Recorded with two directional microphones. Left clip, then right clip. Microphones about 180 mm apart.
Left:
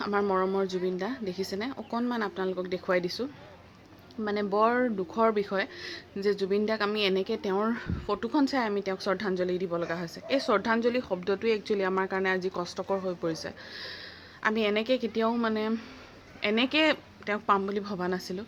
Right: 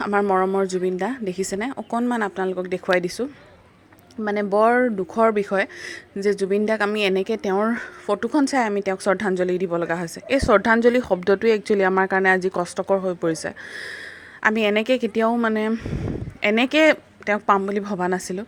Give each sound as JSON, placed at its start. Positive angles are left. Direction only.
{"t": 0.0, "sound": "speech", "side_deg": -40}